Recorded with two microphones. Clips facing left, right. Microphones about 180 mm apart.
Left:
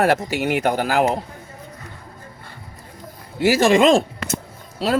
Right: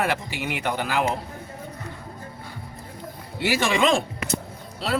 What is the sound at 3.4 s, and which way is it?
Speech, 45° left (ahead or behind).